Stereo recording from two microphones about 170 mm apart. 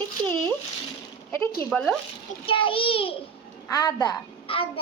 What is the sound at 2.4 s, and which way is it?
A child's voice, 30° left (ahead or behind).